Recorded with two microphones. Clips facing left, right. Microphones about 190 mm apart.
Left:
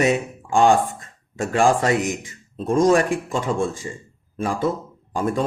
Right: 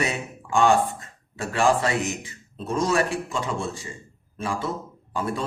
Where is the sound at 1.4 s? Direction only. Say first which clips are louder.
Left 3 dB; 45° left (ahead or behind).